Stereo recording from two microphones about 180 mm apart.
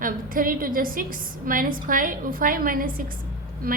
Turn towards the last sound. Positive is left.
turn(degrees=-55)  # may be behind; listen again after turning